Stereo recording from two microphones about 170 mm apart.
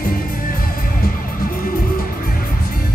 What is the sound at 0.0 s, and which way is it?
Music, 55° left (ahead or behind).